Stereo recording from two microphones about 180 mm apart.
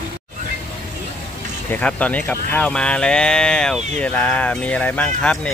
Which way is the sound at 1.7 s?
5° left (ahead or behind).